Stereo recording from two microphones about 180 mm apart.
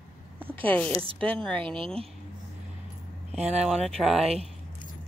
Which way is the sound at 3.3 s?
35° right (ahead or behind).